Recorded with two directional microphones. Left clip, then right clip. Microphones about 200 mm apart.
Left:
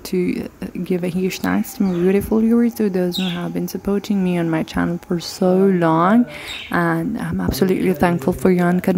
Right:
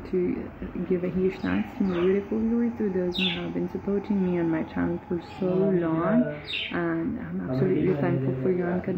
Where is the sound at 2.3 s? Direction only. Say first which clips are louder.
Left 11 dB; 85° left.